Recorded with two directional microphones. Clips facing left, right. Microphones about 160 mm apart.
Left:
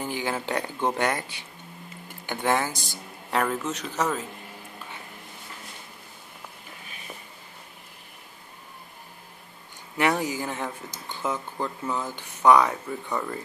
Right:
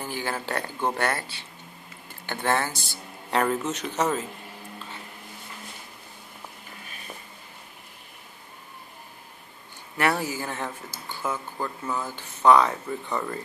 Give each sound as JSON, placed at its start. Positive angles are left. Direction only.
{"t": 0.0, "sound": "speech", "side_deg": 15}
{"t": 3.3, "sound": "a man's voice", "side_deg": 0}
{"t": 9.9, "sound": "speech", "side_deg": 15}